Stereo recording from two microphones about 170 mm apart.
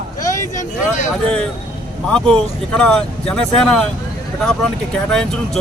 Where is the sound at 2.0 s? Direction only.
5° left (ahead or behind).